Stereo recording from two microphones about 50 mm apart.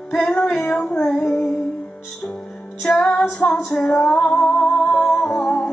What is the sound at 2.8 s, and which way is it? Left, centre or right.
Music, centre.